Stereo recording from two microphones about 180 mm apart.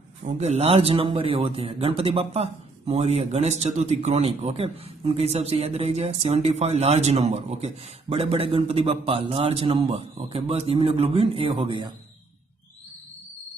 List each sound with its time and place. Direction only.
0.2 s a man's voice: 35° right (ahead or behind)